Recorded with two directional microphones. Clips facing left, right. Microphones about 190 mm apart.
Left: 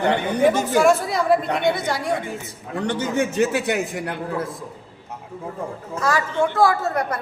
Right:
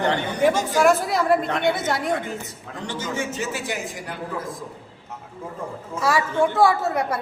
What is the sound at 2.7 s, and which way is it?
A man's voice, 65° left (ahead or behind).